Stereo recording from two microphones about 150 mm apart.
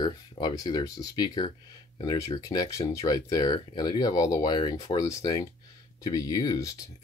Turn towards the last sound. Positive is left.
turn(degrees=25)  # may be behind; listen again after turning